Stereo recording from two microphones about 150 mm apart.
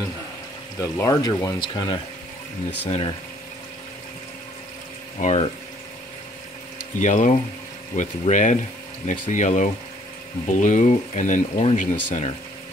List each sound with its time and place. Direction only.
0.7 s speech: 20° left (ahead or behind); by 3.2 s 40° left (ahead or behind)
5.2 s speech: 50° left (ahead or behind)
7.0 s speech: 55° left (ahead or behind)